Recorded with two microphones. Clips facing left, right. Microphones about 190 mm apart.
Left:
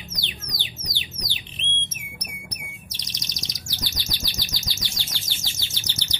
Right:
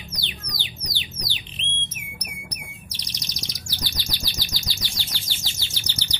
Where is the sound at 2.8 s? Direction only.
20° left (ahead or behind).